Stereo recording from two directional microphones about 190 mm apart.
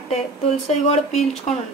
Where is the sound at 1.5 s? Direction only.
40° left (ahead or behind).